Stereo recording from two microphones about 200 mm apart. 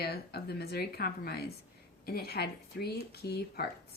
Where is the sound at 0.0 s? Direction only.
55° left (ahead or behind).